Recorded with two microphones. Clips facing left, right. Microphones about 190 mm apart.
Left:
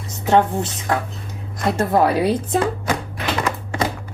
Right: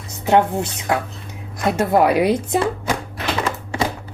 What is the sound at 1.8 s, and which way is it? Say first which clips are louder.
A woman's voice: right 2 dB; 15° right (ahead or behind).